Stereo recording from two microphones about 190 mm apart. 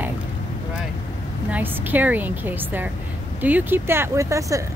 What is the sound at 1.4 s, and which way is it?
Speech, 10° right (ahead or behind).